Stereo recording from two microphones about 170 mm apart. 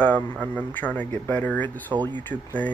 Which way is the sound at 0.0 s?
10° left (ahead or behind).